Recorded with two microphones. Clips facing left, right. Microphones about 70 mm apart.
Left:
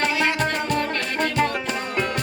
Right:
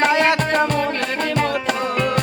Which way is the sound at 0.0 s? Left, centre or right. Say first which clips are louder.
Right 6 dB; right.